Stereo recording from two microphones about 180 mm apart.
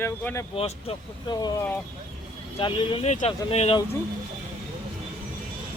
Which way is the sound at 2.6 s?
35° left (ahead or behind).